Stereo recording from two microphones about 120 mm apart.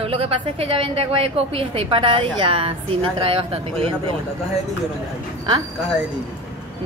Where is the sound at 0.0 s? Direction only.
55° right (ahead or behind).